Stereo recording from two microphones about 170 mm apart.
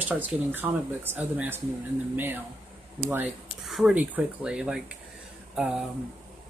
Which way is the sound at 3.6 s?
5° right (ahead or behind).